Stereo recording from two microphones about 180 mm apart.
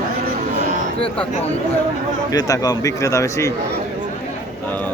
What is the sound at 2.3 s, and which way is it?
Speech, 20° left (ahead or behind).